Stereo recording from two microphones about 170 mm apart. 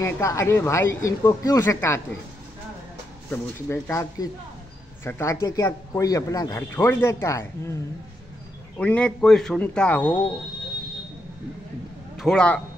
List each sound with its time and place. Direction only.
0.0 s a man's voice: 15° left (ahead or behind)
3.3 s a man's voice: 15° left (ahead or behind)
8.7 s a man's voice: 10° left (ahead or behind)
12.2 s a man's voice: 5° left (ahead or behind)